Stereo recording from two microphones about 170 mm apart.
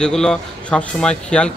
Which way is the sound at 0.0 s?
5° left (ahead or behind).